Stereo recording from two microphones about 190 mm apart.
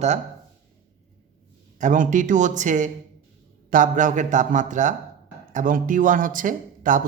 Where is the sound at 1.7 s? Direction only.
40° right (ahead or behind).